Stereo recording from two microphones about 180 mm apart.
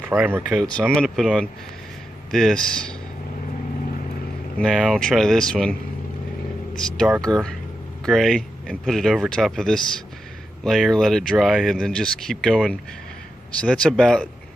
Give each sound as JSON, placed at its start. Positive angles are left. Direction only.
{"t": 0.1, "sound": "speech", "side_deg": -10}
{"t": 4.6, "sound": "speech", "side_deg": 0}
{"t": 7.3, "sound": "speech", "side_deg": -25}
{"t": 8.0, "sound": "speech", "side_deg": 0}